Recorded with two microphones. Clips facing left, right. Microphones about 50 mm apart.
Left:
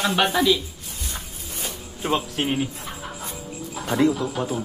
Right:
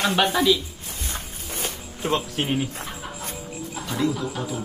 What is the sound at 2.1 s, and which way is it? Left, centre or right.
Speech, centre.